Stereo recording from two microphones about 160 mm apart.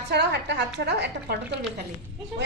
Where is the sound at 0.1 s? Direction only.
90° right.